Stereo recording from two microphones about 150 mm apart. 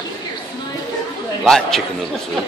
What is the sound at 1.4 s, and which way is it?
Speech, 5° left (ahead or behind).